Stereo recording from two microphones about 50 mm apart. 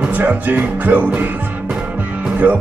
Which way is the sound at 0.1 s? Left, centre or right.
Right.